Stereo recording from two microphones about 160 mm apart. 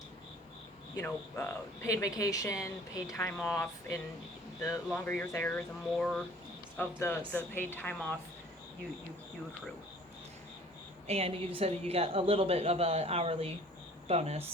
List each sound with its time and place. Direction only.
0.9 s speech: 15° left (ahead or behind)
11.0 s a woman's voice: 40° right (ahead or behind)